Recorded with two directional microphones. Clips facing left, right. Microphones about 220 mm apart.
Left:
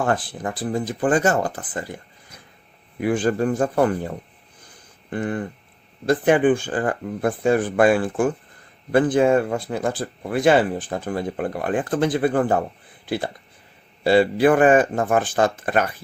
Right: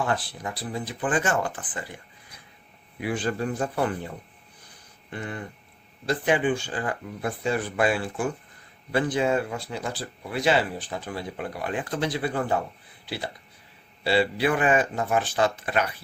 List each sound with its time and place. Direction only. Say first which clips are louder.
0.0 s speech: left 5 dB; 50° left (ahead or behind)
3.0 s speech: left 7 dB; 45° left (ahead or behind)
5.1 s speech: left 9 dB; 50° left (ahead or behind)